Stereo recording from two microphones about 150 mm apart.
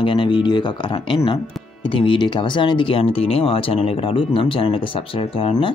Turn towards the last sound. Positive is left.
turn(degrees=35)  # may be behind; listen again after turning